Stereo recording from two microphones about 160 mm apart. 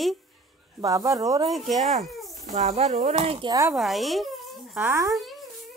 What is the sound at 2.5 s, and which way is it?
Speech, 45° right (ahead or behind).